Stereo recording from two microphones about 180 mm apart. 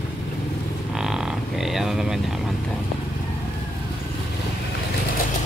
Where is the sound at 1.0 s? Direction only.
5° right (ahead or behind).